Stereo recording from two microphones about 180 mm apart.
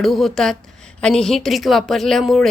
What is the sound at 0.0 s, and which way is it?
A woman's voice, centre (ahead or behind).